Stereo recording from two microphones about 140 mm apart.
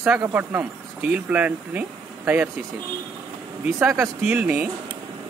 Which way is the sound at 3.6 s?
20° right (ahead or behind).